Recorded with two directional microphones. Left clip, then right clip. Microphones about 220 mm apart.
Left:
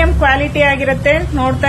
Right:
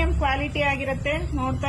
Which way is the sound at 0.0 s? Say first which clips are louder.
Left 12 dB; 5° left (ahead or behind).